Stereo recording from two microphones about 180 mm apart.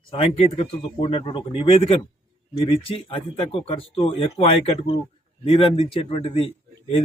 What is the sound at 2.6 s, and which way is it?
Speech, 30° left (ahead or behind).